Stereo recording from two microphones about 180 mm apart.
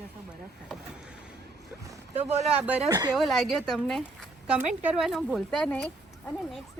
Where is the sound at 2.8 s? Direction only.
20° right (ahead or behind).